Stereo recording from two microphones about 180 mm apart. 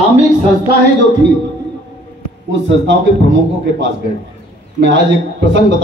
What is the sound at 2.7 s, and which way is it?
Speech, 85° right.